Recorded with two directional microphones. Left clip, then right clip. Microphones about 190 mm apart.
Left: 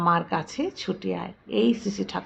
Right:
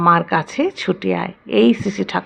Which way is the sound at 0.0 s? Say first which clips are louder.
Right 9 dB; 20° right (ahead or behind).